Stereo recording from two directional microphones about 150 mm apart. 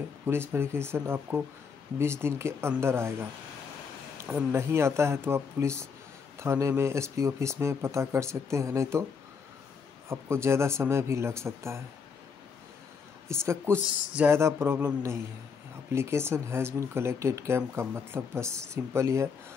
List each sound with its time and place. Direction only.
0.3 s speech: 15° right (ahead or behind)
4.5 s speech: 15° right (ahead or behind)
10.0 s speech: 15° right (ahead or behind)
13.3 s speech: 15° right (ahead or behind)